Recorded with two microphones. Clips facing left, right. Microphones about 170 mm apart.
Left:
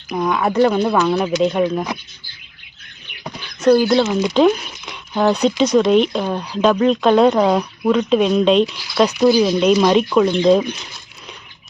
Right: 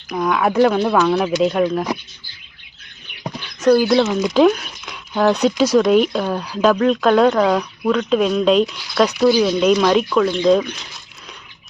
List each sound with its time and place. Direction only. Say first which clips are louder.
0.1 s speech: even; centre (ahead or behind)
3.6 s speech: even; centre (ahead or behind)
7.3 s speech: left 1 dB; 15° left (ahead or behind)
10.1 s speech: left 2 dB; 15° left (ahead or behind)